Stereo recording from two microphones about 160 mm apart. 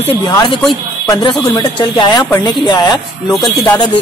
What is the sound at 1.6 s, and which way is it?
A man's voice, 30° left (ahead or behind).